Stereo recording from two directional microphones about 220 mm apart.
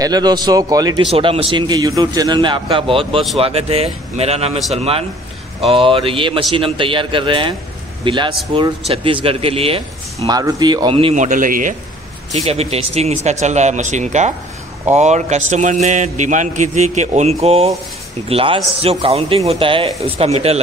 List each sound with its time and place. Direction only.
0.0 s a man's voice: 20° right (ahead or behind)